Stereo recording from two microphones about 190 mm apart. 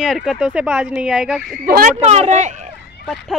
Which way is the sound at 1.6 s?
45° right (ahead or behind).